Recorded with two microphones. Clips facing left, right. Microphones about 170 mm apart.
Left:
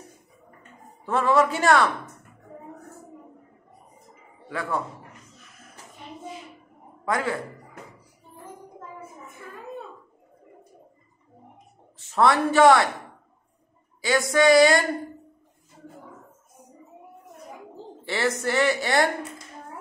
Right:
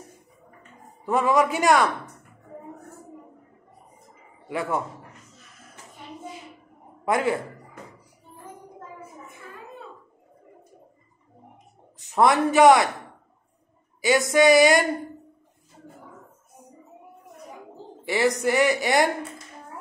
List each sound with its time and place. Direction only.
1.0 s a woman's voice: 15° right (ahead or behind)
4.5 s speech: 20° right (ahead or behind)
7.1 s speech: 20° right (ahead or behind)
12.1 s speech: 20° right (ahead or behind)
14.0 s speech: 20° right (ahead or behind)
18.0 s a woman's voice: 15° right (ahead or behind)